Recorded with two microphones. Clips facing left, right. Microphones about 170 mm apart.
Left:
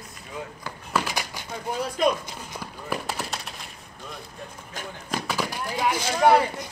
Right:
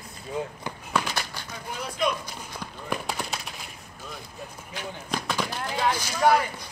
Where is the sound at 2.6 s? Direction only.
5° left (ahead or behind).